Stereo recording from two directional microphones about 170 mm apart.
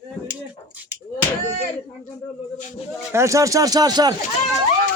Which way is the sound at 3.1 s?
15° right (ahead or behind).